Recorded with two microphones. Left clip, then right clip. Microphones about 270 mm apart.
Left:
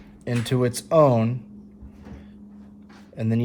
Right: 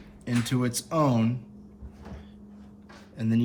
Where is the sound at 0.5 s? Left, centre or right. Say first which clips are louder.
Left 11 dB; left.